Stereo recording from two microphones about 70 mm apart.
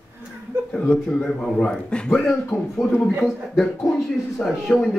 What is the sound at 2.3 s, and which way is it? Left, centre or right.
Speech, centre.